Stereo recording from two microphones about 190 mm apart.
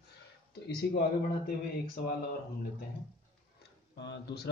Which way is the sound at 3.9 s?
65° left (ahead or behind).